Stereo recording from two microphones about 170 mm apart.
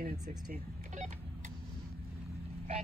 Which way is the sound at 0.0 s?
60° right (ahead or behind).